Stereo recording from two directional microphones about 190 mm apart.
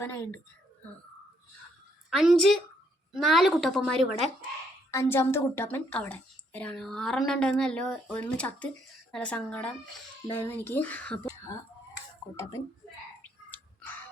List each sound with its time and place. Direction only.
0.0 s speech: 15° left (ahead or behind)
2.0 s a woman's voice: centre (ahead or behind)
4.9 s a woman's voice: 15° left (ahead or behind)
13.5 s chewing: 10° left (ahead or behind)